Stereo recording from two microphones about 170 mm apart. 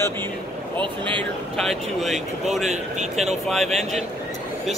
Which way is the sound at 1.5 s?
Centre (ahead or behind).